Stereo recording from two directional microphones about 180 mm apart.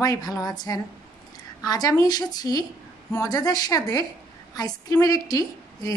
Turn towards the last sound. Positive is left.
turn(degrees=20)  # may be behind; listen again after turning